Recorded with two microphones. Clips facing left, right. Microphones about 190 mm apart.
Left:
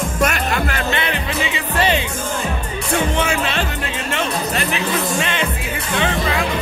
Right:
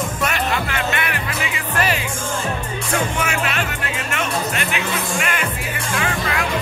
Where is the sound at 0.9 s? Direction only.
25° left (ahead or behind).